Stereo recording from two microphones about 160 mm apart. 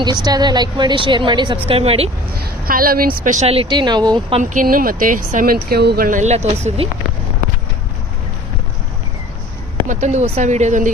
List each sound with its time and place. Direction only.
0.0 s a woman's voice: 25° right (ahead or behind)
2.4 s a woman's voice: 65° right (ahead or behind); by 4.4 s 25° right (ahead or behind)
4.4 s speech: 55° right (ahead or behind)
9.8 s a woman's voice: 50° right (ahead or behind)